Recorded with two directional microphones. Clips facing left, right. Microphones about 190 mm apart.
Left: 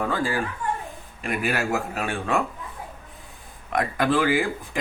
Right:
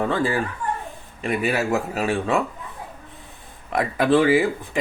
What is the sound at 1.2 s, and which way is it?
Speech, centre (ahead or behind).